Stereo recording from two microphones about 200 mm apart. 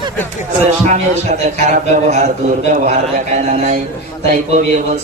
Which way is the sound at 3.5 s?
35° right (ahead or behind).